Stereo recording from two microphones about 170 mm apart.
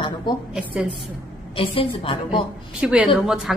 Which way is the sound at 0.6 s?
5° right (ahead or behind).